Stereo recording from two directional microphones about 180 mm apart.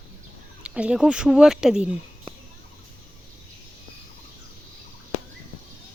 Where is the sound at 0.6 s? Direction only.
5° right (ahead or behind).